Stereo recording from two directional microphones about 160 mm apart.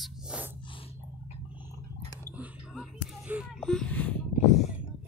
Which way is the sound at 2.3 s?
5° right (ahead or behind).